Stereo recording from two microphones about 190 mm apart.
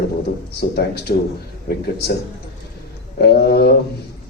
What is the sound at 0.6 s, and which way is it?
Speech, 60° left (ahead or behind).